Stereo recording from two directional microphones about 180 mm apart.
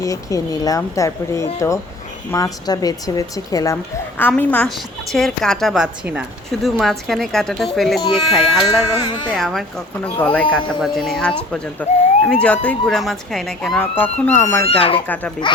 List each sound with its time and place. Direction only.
0.0 s a woman's voice: 20° left (ahead or behind)
14.6 s speech: 30° left (ahead or behind)
15.0 s speech: 10° left (ahead or behind)